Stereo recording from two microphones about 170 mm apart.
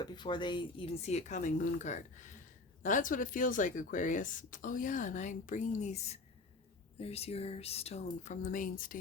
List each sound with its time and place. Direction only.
0.0 s speech: 25° left (ahead or behind)
1.0 s speech: 40° left (ahead or behind)